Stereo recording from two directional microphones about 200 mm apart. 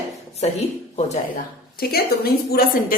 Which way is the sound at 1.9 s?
50° left (ahead or behind).